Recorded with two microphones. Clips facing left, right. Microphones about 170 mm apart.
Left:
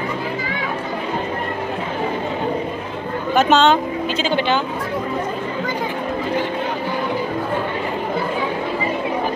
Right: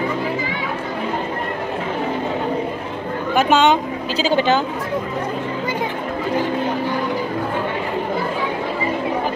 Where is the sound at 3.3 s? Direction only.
10° right (ahead or behind).